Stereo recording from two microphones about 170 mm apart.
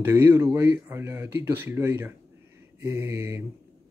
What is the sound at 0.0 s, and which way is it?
Speech, 15° right (ahead or behind).